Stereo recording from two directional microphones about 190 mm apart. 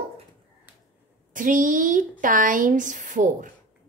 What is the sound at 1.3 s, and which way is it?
A woman's voice, 45° right (ahead or behind).